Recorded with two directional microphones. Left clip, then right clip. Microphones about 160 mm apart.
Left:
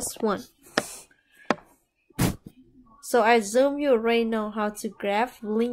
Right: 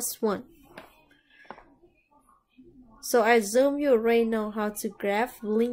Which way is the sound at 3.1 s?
10° left (ahead or behind).